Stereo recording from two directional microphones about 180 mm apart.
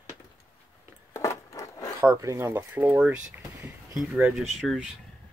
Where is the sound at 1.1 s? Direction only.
15° left (ahead or behind).